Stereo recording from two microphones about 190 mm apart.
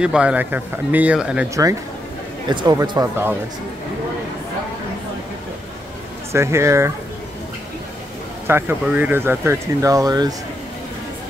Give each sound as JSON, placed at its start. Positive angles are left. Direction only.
{"t": 0.0, "sound": "speech", "side_deg": -5}
{"t": 1.5, "sound": "speech", "side_deg": -15}
{"t": 6.3, "sound": "speech", "side_deg": -15}
{"t": 8.5, "sound": "speech", "side_deg": -10}